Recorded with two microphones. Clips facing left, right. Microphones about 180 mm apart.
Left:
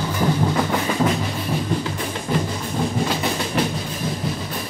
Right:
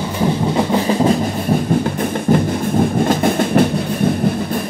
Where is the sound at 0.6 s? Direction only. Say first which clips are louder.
Right 5 dB; 30° right (ahead or behind).